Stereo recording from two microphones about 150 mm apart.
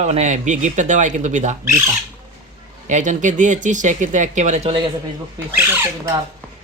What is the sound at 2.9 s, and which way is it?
Speech, 55° right (ahead or behind).